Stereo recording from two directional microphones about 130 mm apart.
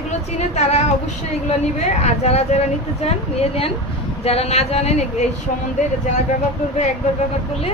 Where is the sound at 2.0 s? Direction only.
55° left (ahead or behind).